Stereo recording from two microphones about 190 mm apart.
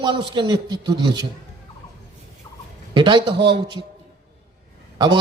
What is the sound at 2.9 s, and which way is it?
Speech, 25° right (ahead or behind).